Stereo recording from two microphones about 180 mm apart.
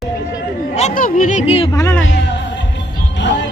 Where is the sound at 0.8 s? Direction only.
45° left (ahead or behind).